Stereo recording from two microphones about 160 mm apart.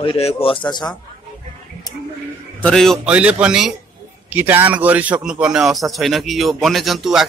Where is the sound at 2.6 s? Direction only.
5° left (ahead or behind).